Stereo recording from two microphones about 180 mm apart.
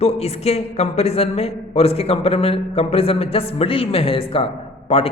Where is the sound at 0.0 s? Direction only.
35° left (ahead or behind).